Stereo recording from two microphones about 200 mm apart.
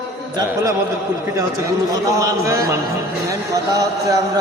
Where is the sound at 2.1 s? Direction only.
15° right (ahead or behind).